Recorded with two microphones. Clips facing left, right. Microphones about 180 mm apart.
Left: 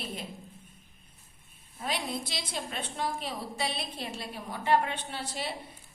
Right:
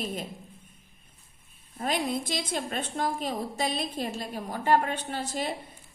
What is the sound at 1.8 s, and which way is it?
A woman's voice, 50° right (ahead or behind).